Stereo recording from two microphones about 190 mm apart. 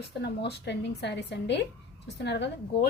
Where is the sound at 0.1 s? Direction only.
60° left (ahead or behind).